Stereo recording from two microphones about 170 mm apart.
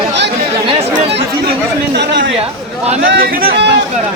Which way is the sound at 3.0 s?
75° right (ahead or behind).